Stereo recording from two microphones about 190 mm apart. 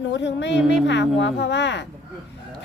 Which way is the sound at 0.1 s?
65° left (ahead or behind).